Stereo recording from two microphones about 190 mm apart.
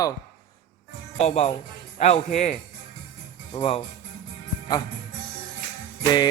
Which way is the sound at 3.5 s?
30° left (ahead or behind).